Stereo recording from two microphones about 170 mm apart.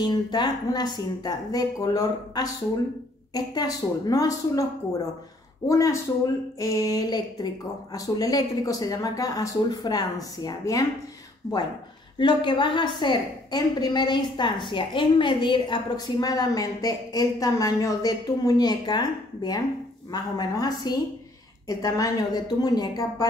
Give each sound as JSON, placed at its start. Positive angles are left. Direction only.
{"t": 0.0, "sound": "a woman's voice", "side_deg": 25}
{"t": 5.7, "sound": "a woman's voice", "side_deg": 20}
{"t": 12.2, "sound": "a woman's voice", "side_deg": 25}